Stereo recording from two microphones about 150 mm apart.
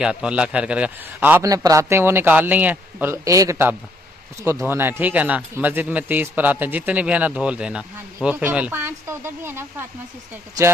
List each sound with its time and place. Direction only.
0.0 s a man's voice: 5° right (ahead or behind)
1.4 s a man's voice: 25° right (ahead or behind)